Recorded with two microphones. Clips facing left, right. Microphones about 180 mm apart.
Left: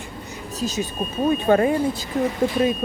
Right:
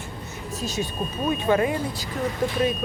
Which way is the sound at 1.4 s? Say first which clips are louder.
Left 3 dB; 35° left (ahead or behind).